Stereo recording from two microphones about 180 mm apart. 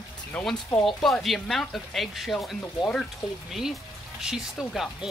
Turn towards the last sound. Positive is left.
turn(degrees=0)  # may be behind; listen again after turning